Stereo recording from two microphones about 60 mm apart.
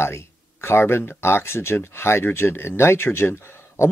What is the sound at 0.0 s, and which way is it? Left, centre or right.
Speech, left.